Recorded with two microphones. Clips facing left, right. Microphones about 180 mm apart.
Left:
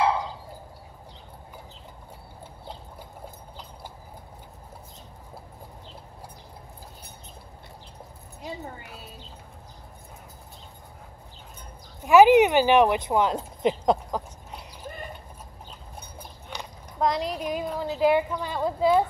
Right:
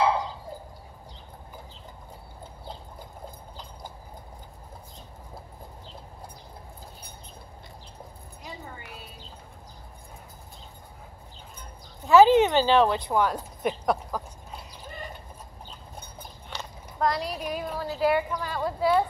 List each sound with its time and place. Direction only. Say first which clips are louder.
12.0 s speech: left 2 dB; 15° left (ahead or behind)
16.4 s speech: left 1 dB; 15° left (ahead or behind)